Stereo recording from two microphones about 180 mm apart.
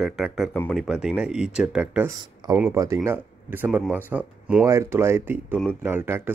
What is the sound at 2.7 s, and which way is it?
Speech, 15° right (ahead or behind).